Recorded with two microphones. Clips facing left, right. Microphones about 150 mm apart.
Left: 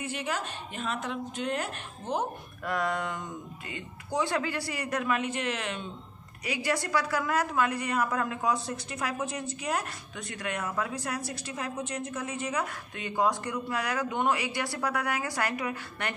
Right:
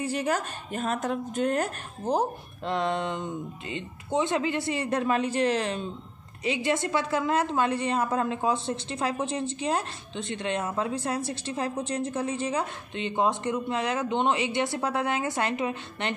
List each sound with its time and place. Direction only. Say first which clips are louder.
0.0 s a woman's voice: right 6 dB; 40° right (ahead or behind)
2.6 s a woman's voice: right 3 dB; 25° right (ahead or behind)
6.4 s a woman's voice: right 4 dB; 25° right (ahead or behind)